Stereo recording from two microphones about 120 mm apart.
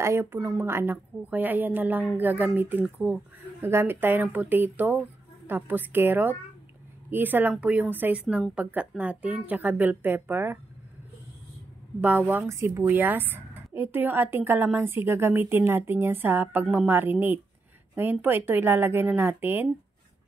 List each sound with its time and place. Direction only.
0.0 s a woman's voice: 20° right (ahead or behind)
12.0 s a woman's voice: 15° right (ahead or behind)